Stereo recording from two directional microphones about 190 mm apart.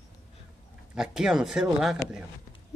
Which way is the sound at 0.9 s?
5° right (ahead or behind).